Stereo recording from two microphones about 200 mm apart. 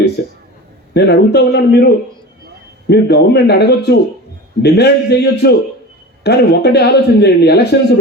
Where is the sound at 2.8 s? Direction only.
55° left (ahead or behind).